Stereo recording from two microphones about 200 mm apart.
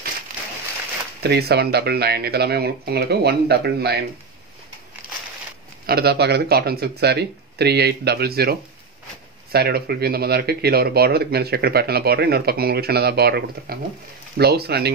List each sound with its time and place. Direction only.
1.2 s speech: 55° right (ahead or behind)
5.9 s speech: 50° right (ahead or behind)